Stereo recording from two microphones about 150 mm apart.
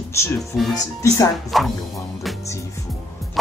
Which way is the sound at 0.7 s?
20° left (ahead or behind).